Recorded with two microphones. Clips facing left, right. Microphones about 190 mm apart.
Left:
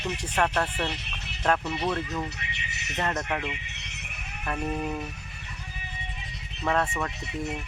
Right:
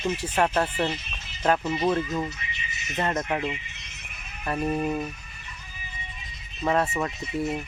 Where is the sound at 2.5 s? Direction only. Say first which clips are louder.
Right 1 dB; 70° left (ahead or behind).